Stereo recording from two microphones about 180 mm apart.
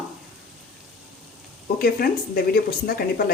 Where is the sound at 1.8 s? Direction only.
55° left (ahead or behind).